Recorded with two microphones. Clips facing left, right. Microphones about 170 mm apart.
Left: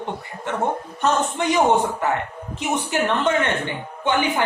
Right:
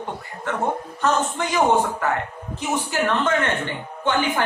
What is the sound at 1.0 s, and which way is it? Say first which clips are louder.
Speech: left 2 dB; 20° left (ahead or behind).